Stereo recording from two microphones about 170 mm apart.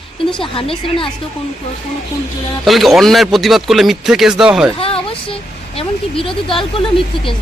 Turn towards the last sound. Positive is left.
turn(degrees=30)  # may be behind; listen again after turning